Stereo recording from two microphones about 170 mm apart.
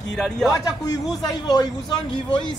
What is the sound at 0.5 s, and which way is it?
A man's voice, 20° left (ahead or behind).